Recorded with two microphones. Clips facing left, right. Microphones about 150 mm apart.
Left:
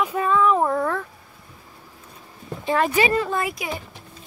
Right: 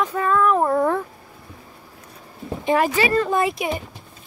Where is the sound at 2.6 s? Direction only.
15° right (ahead or behind).